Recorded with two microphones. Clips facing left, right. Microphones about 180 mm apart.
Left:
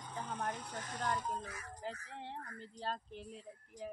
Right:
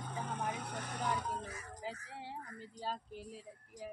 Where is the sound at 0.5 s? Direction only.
65° right (ahead or behind).